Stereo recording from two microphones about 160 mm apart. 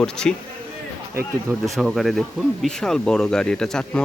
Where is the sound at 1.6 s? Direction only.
Centre (ahead or behind).